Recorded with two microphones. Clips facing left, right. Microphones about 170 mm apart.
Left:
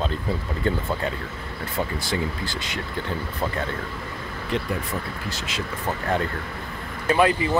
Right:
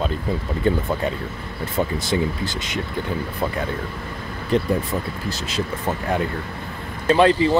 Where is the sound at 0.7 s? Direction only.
15° right (ahead or behind).